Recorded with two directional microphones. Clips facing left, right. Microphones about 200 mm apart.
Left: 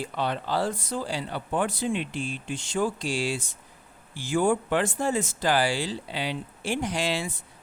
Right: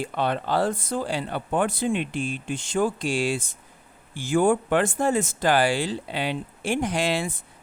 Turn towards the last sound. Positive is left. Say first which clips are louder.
# right 3 dB
turn(degrees=-55)  # may be behind; listen again after turning